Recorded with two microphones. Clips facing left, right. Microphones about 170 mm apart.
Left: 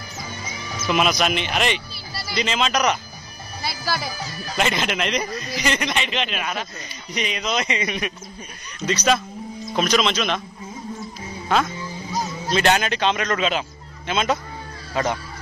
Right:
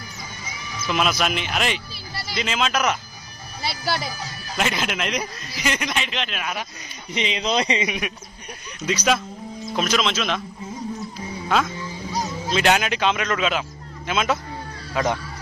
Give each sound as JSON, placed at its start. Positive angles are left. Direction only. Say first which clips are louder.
{"t": 0.8, "sound": "speech", "louder": "left 2 dB", "side_deg": 5}
{"t": 4.6, "sound": "speech", "louder": "left 2 dB", "side_deg": 0}
{"t": 7.2, "sound": "speech", "louder": "right 2 dB", "side_deg": -25}
{"t": 7.8, "sound": "speech", "louder": "even", "side_deg": -10}
{"t": 11.4, "sound": "speech", "louder": "left 1 dB", "side_deg": 5}